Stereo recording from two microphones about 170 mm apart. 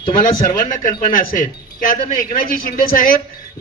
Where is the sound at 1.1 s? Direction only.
55° left (ahead or behind).